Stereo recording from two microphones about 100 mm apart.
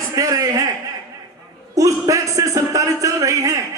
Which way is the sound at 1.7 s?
35° right (ahead or behind).